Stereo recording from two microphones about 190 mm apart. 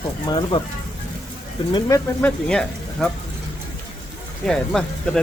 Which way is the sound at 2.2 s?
5° left (ahead or behind).